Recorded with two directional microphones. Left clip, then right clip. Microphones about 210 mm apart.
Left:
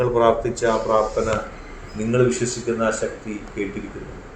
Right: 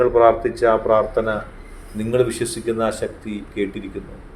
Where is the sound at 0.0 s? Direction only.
25° right (ahead or behind).